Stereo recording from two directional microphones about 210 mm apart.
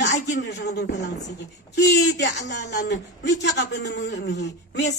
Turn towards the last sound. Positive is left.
turn(degrees=55)  # may be behind; listen again after turning